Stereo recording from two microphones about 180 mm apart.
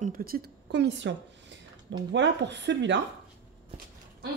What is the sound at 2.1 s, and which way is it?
Speech, 75° right (ahead or behind).